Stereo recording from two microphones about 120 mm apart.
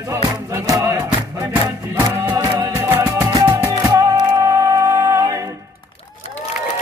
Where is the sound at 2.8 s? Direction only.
25° right (ahead or behind).